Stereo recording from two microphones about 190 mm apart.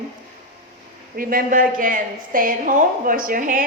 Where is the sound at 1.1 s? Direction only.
50° right (ahead or behind).